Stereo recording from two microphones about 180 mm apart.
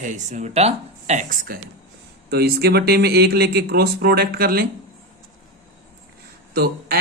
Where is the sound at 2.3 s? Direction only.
60° right (ahead or behind).